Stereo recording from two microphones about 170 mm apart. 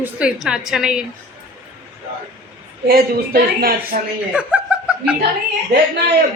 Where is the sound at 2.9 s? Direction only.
60° right (ahead or behind).